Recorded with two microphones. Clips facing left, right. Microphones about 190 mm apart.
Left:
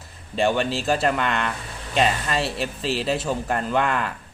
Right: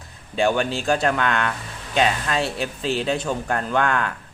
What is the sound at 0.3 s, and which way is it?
Speech, centre (ahead or behind).